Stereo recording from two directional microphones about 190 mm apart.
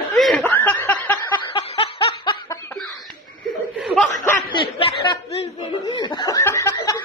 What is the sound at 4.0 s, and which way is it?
Snicker, 15° left (ahead or behind).